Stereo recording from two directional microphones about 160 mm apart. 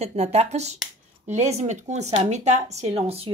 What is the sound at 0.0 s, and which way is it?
A woman's voice, 40° right (ahead or behind).